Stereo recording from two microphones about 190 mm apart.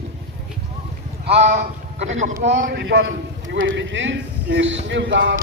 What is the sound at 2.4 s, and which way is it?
Speech, 70° right (ahead or behind).